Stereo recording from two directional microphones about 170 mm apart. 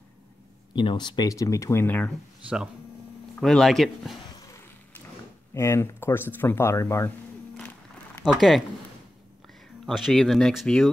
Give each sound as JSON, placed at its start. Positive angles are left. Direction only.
{"t": 0.7, "sound": "speech", "side_deg": 25}
{"t": 3.3, "sound": "speech", "side_deg": 0}
{"t": 4.5, "sound": "vehicle", "side_deg": 15}
{"t": 5.5, "sound": "speech", "side_deg": 15}
{"t": 8.3, "sound": "speech", "side_deg": 0}
{"t": 9.8, "sound": "speech", "side_deg": 0}